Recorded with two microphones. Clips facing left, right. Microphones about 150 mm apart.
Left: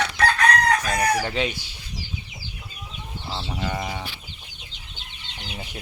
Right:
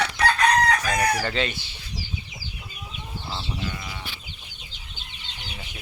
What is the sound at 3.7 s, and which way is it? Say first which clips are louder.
Livestock: left 7 dB; 90° left.